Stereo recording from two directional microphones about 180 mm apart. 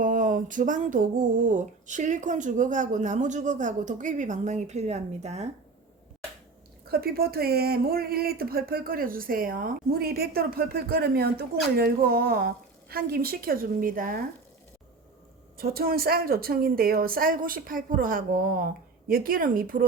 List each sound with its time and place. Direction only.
0.0 s a sound: 45° right (ahead or behind)
6.8 s speech: 60° right (ahead or behind)
15.5 s speech: 55° right (ahead or behind)